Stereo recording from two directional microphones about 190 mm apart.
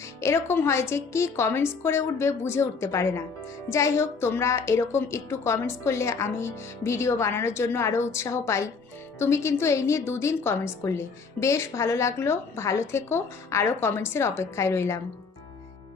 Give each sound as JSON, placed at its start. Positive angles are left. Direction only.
{"t": 0.2, "sound": "a woman's voice", "side_deg": 15}